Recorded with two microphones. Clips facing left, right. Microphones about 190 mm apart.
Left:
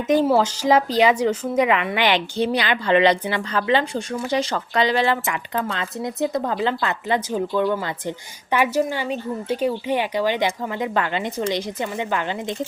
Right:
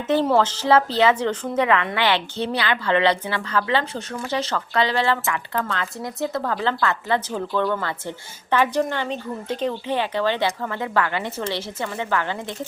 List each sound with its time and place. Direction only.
0.1 s speech: 10° left (ahead or behind)